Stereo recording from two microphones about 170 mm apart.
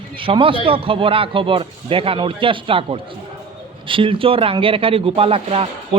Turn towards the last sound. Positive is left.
turn(degrees=-35)  # may be behind; listen again after turning